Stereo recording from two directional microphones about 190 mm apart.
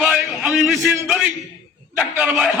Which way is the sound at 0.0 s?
Centre (ahead or behind).